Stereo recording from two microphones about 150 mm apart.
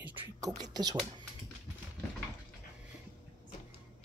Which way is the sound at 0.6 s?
25° right (ahead or behind).